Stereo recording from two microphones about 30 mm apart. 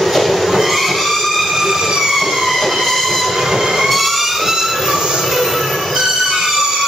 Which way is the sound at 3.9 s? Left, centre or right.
Centre.